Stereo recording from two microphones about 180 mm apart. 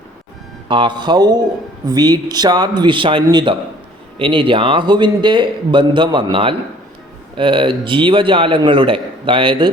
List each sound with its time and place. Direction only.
0.7 s a man's voice: 25° right (ahead or behind)